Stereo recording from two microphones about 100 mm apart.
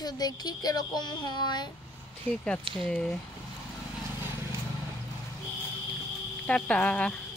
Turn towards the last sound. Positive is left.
turn(degrees=10)  # may be behind; listen again after turning